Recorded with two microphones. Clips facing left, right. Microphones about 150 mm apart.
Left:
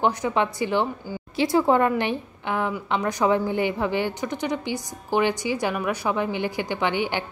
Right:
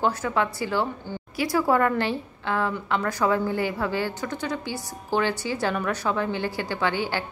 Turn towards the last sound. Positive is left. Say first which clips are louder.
# left 1 dB
turn(degrees=20)  # may be behind; listen again after turning